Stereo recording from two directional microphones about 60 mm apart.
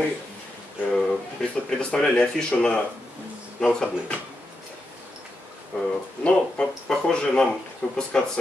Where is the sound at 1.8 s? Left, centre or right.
Centre.